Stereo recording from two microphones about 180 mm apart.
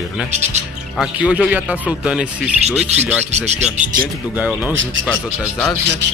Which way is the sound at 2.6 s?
35° right (ahead or behind).